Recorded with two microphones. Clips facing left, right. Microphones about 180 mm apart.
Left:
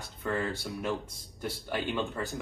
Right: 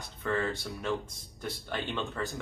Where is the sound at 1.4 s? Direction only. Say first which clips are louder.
Left 2 dB; 10° left (ahead or behind).